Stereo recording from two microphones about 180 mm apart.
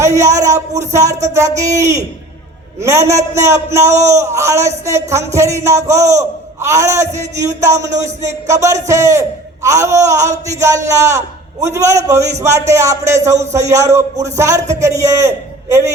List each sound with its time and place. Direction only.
0.0 s a man's voice: 15° right (ahead or behind)